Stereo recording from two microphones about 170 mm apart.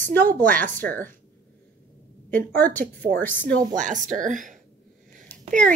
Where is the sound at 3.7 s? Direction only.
50° right (ahead or behind).